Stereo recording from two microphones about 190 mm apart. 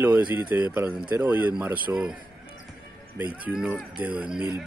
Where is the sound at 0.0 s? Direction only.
10° right (ahead or behind).